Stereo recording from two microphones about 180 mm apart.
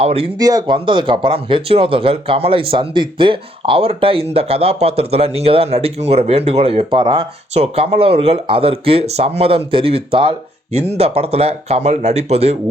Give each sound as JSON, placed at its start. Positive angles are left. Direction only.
{"t": 0.0, "sound": "speech", "side_deg": -35}
{"t": 0.3, "sound": "speech", "side_deg": -20}